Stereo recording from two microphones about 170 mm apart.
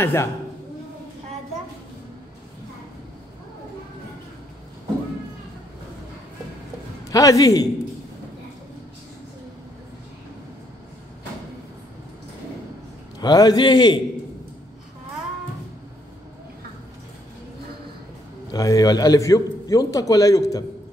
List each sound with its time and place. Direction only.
0.0 s speech: 15° left (ahead or behind)
7.1 s a man's voice: 20° left (ahead or behind)
13.2 s a man's voice: 20° left (ahead or behind)
18.5 s a man's voice: 20° left (ahead or behind)